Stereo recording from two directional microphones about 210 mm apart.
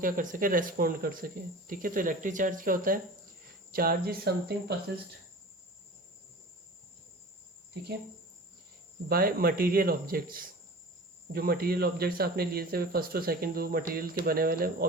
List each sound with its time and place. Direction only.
0.0 s speech: 40° right (ahead or behind)
9.0 s speech: 45° right (ahead or behind)